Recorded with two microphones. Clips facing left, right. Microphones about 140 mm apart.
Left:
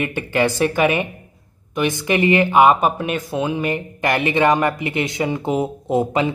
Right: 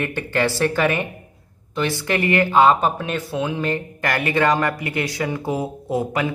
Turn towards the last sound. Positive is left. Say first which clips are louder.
# left 4 dB
turn(degrees=25)  # may be behind; listen again after turning